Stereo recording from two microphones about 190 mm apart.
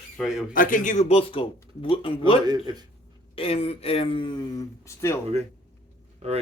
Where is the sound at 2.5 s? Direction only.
20° right (ahead or behind).